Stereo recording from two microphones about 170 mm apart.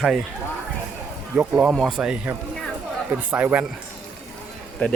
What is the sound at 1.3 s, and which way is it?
Speech, 10° right (ahead or behind).